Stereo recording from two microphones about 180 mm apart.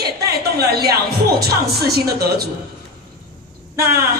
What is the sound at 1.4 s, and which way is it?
A woman's voice, 60° right (ahead or behind).